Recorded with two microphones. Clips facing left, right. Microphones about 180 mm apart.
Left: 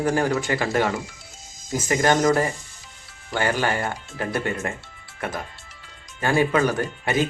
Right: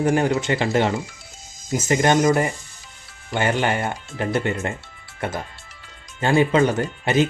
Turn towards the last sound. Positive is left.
turn(degrees=-25)  # may be behind; listen again after turning